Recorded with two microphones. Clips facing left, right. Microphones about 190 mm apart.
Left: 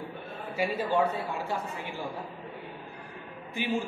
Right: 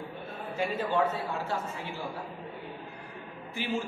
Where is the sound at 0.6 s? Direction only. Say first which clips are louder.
Left 1 dB; 10° left (ahead or behind).